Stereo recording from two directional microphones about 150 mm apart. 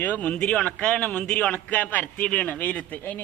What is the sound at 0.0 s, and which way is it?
A man's voice, 10° left (ahead or behind).